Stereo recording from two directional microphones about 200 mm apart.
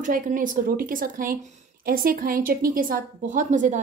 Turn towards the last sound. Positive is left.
turn(degrees=-40)  # may be behind; listen again after turning